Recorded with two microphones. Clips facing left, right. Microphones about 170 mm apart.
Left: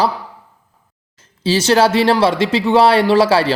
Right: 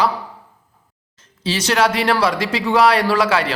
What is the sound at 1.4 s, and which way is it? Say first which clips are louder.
Speech: left 5 dB; 30° left (ahead or behind).